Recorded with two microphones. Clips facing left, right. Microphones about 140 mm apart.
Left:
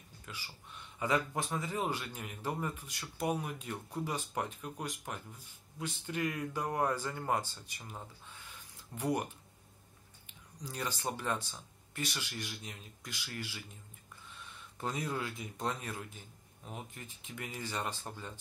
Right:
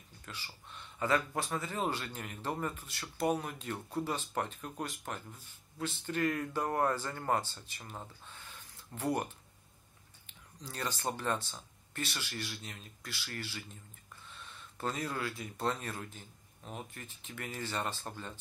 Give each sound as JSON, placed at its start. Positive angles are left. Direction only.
{"t": 0.2, "sound": "speech", "side_deg": 10}
{"t": 8.9, "sound": "speech", "side_deg": 10}
{"t": 10.6, "sound": "speech", "side_deg": 10}
{"t": 14.8, "sound": "speech", "side_deg": 15}